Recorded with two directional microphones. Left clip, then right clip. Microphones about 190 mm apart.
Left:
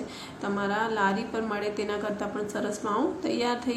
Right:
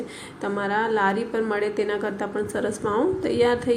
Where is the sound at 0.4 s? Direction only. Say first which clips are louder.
Right 4 dB; 20° right (ahead or behind).